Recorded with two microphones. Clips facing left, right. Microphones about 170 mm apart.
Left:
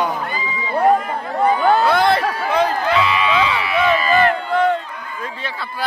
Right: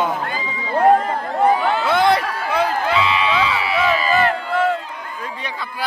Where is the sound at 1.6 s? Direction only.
45° left (ahead or behind).